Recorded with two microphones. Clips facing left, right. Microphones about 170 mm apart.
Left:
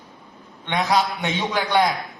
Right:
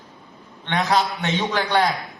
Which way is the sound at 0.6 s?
10° left (ahead or behind).